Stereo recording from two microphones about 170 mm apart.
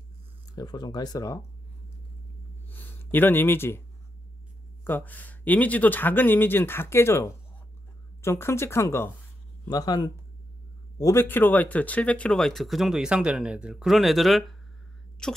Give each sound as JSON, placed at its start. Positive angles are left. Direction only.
{"t": 0.6, "sound": "speech", "side_deg": 25}
{"t": 2.7, "sound": "speech", "side_deg": 10}
{"t": 4.8, "sound": "speech", "side_deg": 10}